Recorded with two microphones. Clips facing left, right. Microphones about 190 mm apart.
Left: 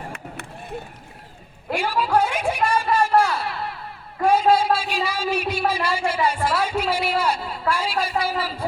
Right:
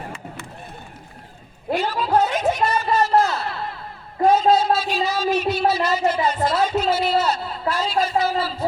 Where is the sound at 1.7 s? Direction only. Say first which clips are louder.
Right 1 dB; 10° left (ahead or behind).